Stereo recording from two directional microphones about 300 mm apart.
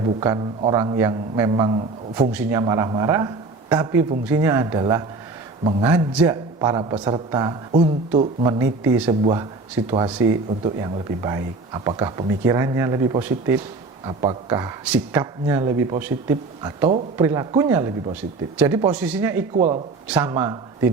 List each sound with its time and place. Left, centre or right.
0.0 s a man's voice: centre
19.5 s a man's voice: centre